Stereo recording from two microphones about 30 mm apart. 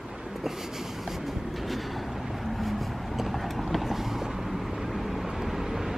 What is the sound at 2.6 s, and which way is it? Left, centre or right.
Vehicle, centre.